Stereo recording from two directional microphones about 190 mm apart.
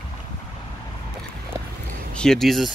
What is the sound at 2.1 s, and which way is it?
Speech, centre (ahead or behind).